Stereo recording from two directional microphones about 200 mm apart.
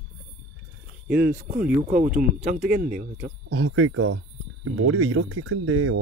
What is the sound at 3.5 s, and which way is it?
Speech, 90° right.